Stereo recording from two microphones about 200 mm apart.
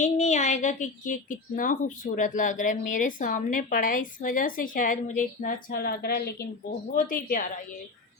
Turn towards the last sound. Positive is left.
turn(degrees=45)  # may be behind; listen again after turning